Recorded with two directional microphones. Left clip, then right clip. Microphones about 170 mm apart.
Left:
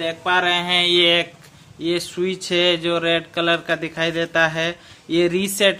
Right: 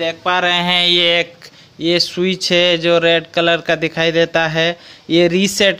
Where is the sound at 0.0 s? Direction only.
40° right (ahead or behind).